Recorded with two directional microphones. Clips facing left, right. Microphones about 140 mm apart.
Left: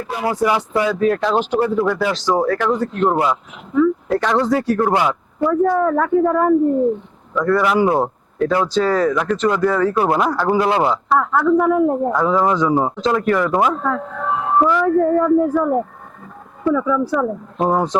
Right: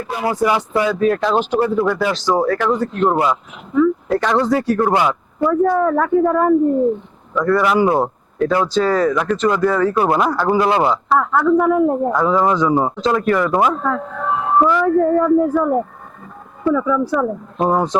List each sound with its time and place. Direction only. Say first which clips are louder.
0.1 s speech: right 1 dB; 20° right (ahead or behind)